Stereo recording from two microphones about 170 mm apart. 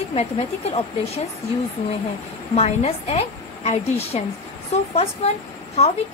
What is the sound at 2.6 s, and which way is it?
Speech, 40° left (ahead or behind).